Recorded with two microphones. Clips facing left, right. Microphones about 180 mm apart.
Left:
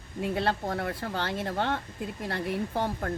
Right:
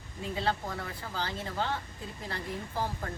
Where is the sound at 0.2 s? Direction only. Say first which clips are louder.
Left 4 dB; 65° left (ahead or behind).